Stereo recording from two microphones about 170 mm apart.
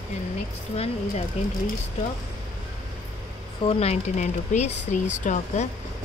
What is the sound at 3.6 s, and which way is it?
Speech, 40° left (ahead or behind).